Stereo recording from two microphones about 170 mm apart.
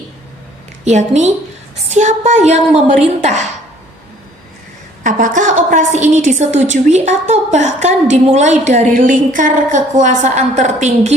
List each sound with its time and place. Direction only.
0.9 s a woman's voice: 45° right (ahead or behind)
5.0 s a woman's voice: 50° right (ahead or behind)